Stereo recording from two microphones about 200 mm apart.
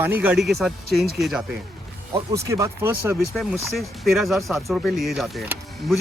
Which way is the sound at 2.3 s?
15° right (ahead or behind).